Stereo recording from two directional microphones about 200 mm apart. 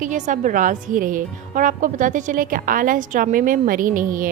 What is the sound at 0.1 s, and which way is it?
A woman's voice, 40° right (ahead or behind).